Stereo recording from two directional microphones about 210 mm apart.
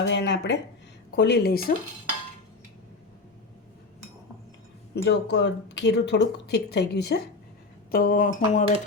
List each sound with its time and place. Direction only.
0.0 s speech: 55° left (ahead or behind)
5.0 s speech: 55° left (ahead or behind); by 8.6 s 40° left (ahead or behind)